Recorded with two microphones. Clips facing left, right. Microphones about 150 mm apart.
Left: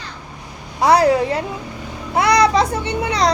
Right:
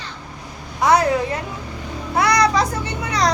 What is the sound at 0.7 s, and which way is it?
A woman's voice, 30° left (ahead or behind).